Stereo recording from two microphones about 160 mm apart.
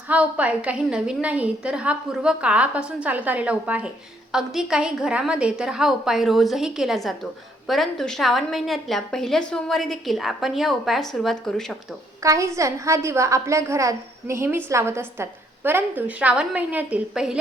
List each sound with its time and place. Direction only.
0.1 s a woman's voice: 10° right (ahead or behind)
12.2 s a woman's voice: 20° right (ahead or behind)